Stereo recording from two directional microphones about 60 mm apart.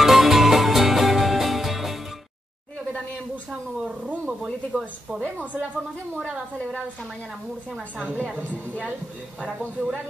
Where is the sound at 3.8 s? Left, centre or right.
Centre.